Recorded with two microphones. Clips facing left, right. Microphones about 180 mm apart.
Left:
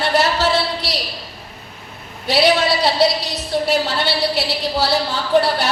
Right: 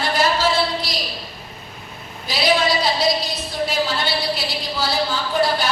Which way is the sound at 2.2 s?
70° left (ahead or behind).